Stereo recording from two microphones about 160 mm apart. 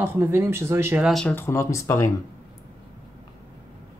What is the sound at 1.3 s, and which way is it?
Speech, 15° left (ahead or behind).